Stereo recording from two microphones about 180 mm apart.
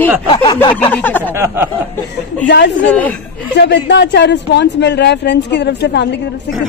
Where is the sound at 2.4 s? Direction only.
70° left (ahead or behind).